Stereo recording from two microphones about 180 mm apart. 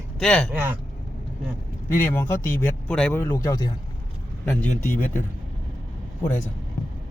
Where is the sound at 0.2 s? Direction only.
5° left (ahead or behind).